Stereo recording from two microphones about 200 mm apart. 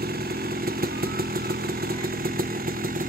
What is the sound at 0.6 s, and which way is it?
Chainsaw, 50° right (ahead or behind).